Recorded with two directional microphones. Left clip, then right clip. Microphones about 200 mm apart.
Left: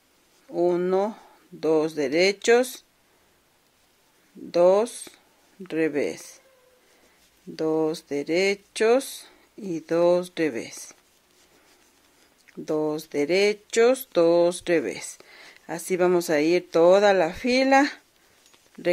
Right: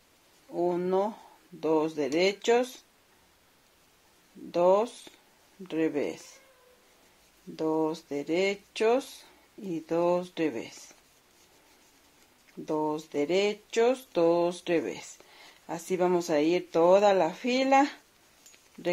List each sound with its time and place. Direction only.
0.5 s a sound: 35° left (ahead or behind)
4.5 s speech: 40° left (ahead or behind)
7.5 s speech: 40° left (ahead or behind)
12.6 s speech: 35° left (ahead or behind)